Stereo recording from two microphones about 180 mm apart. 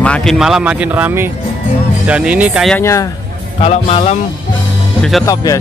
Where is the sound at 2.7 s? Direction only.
15° left (ahead or behind).